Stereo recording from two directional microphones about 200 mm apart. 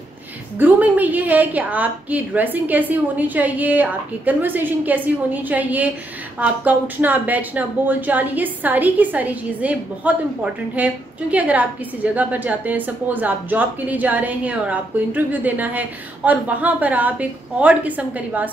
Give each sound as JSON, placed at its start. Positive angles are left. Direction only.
{"t": 0.6, "sound": "a woman's voice", "side_deg": -10}